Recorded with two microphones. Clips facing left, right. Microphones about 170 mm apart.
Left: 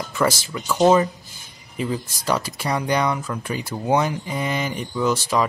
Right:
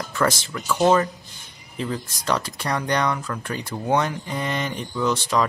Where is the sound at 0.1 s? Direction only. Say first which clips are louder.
Left 1 dB; 5° left (ahead or behind).